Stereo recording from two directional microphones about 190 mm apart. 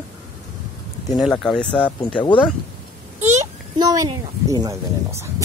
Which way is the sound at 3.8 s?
20° right (ahead or behind).